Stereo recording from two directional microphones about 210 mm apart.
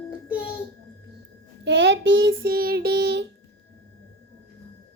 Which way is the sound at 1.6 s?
60° right (ahead or behind).